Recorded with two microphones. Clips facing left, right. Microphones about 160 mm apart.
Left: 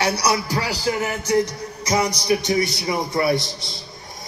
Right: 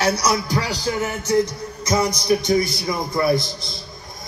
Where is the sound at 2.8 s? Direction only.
10° left (ahead or behind).